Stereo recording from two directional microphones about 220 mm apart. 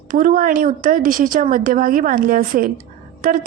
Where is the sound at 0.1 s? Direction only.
35° right (ahead or behind).